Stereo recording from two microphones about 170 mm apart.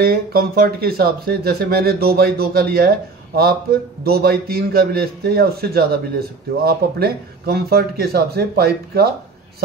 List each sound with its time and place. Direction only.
0.0 s speech: 65° right (ahead or behind)
4.0 s a man's voice: 65° right (ahead or behind)